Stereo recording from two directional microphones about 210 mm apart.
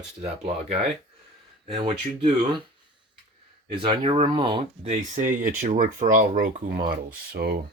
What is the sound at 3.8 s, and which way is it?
A man's voice, 25° right (ahead or behind).